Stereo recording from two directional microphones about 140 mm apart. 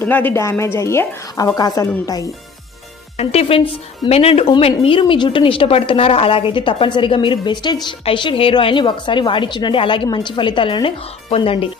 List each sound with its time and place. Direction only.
0.0 s speech: 15° left (ahead or behind)
3.2 s a woman's voice: 45° left (ahead or behind)